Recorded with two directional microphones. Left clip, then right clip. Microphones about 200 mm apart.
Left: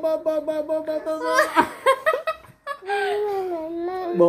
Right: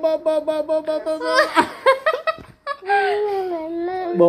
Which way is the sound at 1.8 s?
20° right (ahead or behind).